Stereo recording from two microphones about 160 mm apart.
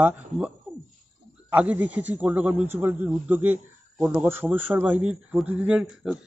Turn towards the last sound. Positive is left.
turn(degrees=-5)  # may be behind; listen again after turning